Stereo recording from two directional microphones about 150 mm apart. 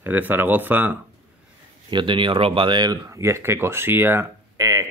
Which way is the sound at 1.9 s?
30° right (ahead or behind).